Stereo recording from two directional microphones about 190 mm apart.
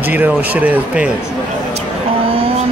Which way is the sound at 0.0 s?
10° right (ahead or behind).